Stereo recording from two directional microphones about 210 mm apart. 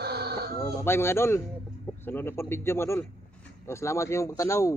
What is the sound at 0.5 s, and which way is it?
Speech, 15° left (ahead or behind).